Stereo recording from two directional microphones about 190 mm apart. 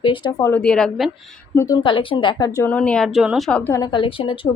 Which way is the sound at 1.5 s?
15° left (ahead or behind).